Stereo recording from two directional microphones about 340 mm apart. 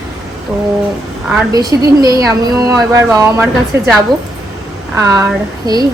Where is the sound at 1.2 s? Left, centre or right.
Centre.